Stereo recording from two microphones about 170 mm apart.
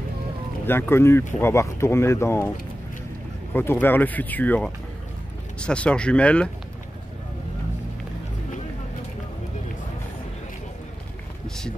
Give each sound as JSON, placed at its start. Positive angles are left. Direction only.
{"t": 0.7, "sound": "speech", "side_deg": 15}
{"t": 3.5, "sound": "speech", "side_deg": 10}
{"t": 11.4, "sound": "a sound", "side_deg": 5}